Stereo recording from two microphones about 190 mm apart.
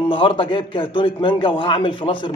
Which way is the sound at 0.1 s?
25° left (ahead or behind).